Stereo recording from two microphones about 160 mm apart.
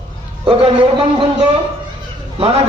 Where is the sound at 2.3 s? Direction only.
35° right (ahead or behind).